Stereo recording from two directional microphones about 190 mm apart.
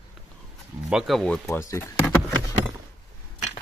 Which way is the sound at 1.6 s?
15° left (ahead or behind).